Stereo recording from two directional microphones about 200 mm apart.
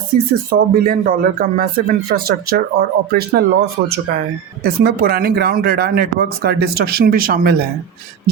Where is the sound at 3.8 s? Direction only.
65° right (ahead or behind).